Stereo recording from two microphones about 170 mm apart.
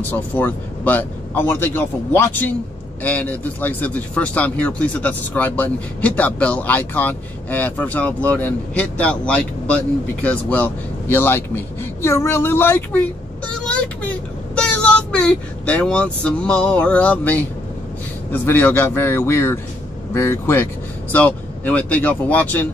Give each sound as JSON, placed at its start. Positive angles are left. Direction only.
{"t": 0.0, "sound": "speech", "side_deg": 10}
{"t": 14.5, "sound": "speech", "side_deg": 5}